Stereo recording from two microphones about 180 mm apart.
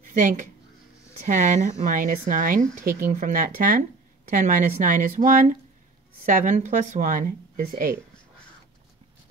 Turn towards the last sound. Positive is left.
turn(degrees=-55)  # may be behind; listen again after turning